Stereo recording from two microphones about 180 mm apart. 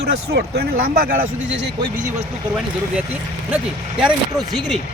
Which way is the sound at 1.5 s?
80° right.